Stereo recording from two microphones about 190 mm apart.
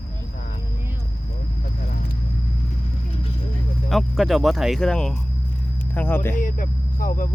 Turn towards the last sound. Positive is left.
turn(degrees=45)  # may be behind; listen again after turning